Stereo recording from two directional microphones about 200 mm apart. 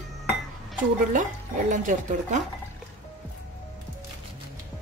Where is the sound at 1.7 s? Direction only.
40° right (ahead or behind).